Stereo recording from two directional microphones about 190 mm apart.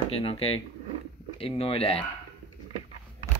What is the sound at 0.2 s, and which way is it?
Speech, 30° left (ahead or behind).